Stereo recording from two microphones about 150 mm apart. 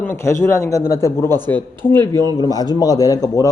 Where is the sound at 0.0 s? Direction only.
15° left (ahead or behind).